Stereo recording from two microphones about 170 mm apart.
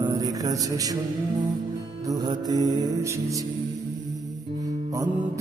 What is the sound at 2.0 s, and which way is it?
Music, 20° right (ahead or behind).